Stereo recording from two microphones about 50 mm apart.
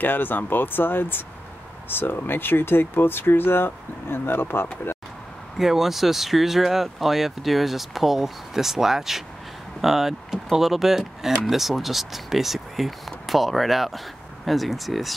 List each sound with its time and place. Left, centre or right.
0.0 s speech: left
4.9 s a sound: left
5.6 s speech: centre